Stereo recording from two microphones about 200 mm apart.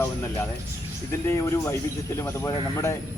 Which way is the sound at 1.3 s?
15° left (ahead or behind).